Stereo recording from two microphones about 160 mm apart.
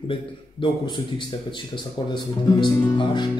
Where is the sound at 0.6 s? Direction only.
30° left (ahead or behind).